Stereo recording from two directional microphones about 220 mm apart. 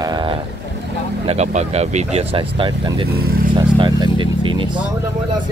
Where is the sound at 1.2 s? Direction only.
30° right (ahead or behind).